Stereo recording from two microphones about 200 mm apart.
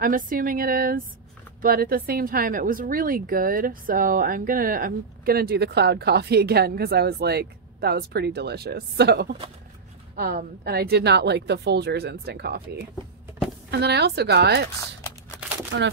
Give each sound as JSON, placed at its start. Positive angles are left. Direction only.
{"t": 0.0, "sound": "a woman's voice", "side_deg": -45}
{"t": 13.7, "sound": "a woman's voice", "side_deg": -55}
{"t": 15.7, "sound": "a woman's voice", "side_deg": -65}